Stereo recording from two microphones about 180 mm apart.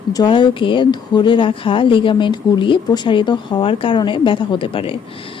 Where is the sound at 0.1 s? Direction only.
25° left (ahead or behind).